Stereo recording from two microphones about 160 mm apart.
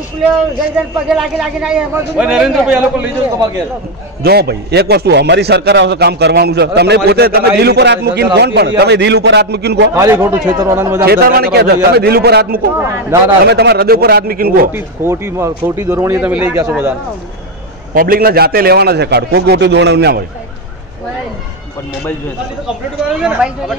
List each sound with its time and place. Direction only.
1.0 s a man's voice: 5° right (ahead or behind)
4.2 s a man's voice: 90° right
7.1 s a man's voice: 75° right (ahead or behind)
9.9 s speech: 20° right (ahead or behind)
11.1 s a man's voice: 70° right (ahead or behind)
12.7 s speech: 20° right (ahead or behind)
13.5 s a man's voice: 90° right; by 14.7 s 70° right (ahead or behind)
14.7 s speech: 15° right (ahead or behind)
17.9 s a man's voice: 65° right (ahead or behind); by 20.2 s 90° right
23.0 s speech: 5° right (ahead or behind)